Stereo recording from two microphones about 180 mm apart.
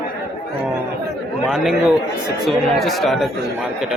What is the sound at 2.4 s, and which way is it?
Speech, centre (ahead or behind).